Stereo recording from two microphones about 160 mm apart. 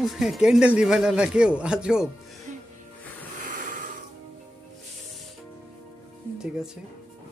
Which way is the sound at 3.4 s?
60° right (ahead or behind).